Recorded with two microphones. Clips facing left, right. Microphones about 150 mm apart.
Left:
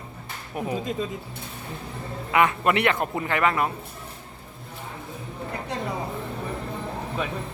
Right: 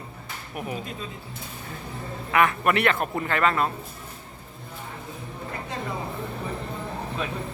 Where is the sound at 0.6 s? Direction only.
25° left (ahead or behind).